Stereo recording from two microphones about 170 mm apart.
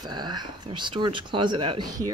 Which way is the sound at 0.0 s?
25° right (ahead or behind).